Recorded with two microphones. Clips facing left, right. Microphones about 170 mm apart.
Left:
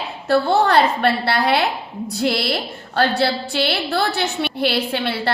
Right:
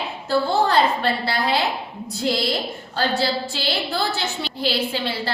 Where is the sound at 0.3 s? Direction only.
65° left (ahead or behind).